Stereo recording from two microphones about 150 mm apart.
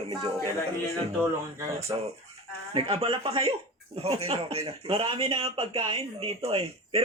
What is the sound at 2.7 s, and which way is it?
A man's voice, 40° right (ahead or behind).